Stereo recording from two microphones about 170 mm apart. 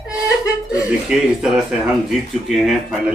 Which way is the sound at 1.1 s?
5° right (ahead or behind).